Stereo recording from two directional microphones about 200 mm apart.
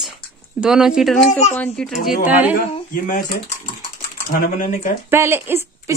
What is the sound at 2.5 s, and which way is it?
Speech, 45° left (ahead or behind).